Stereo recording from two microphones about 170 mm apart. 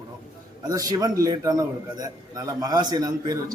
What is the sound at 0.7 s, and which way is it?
A man's voice, 20° right (ahead or behind).